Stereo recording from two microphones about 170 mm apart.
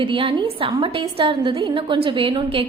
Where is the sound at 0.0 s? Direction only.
30° right (ahead or behind).